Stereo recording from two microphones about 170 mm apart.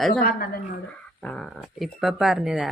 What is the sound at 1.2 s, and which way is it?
Speech, centre (ahead or behind).